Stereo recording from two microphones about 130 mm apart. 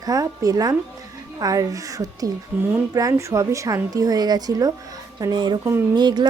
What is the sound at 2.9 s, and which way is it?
A woman's voice, 30° right (ahead or behind).